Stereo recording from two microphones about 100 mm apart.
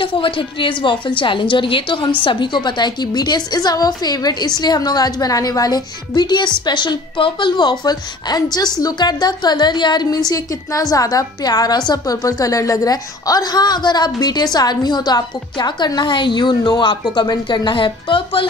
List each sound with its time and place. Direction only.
0.0 s a woman's voice: 60° left (ahead or behind)
10.3 s a woman's voice: 35° left (ahead or behind); by 18.5 s 60° left (ahead or behind)